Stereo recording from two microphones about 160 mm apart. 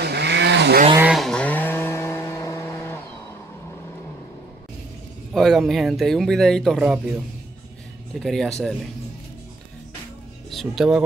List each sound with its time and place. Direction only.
0.0 s vehicle: 90° right
1.1 s a sound: 5° left (ahead or behind)
5.3 s speech: centre (ahead or behind)
8.1 s speech: centre (ahead or behind)
10.5 s speech: centre (ahead or behind)